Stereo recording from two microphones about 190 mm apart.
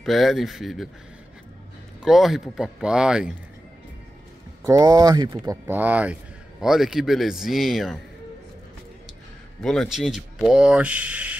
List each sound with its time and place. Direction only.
0.0 s speech: centre (ahead or behind)
2.0 s speech: centre (ahead or behind)
4.6 s speech: 20° right (ahead or behind); by 8.0 s centre (ahead or behind)
9.6 s speech: centre (ahead or behind)